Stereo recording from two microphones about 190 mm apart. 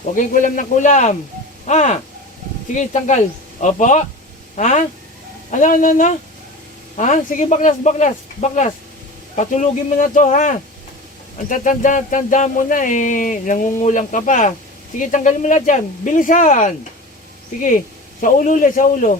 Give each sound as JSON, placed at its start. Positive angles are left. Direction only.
{"t": 0.0, "sound": "speech", "side_deg": 45}